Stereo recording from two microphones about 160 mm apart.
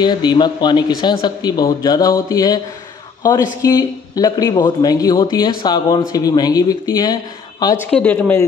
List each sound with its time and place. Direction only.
0.0 s speech: 25° left (ahead or behind)
3.6 s speech: 20° left (ahead or behind)
7.8 s speech: 10° left (ahead or behind)